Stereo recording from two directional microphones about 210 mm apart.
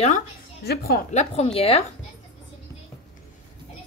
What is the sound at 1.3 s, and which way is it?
Speech, 30° left (ahead or behind).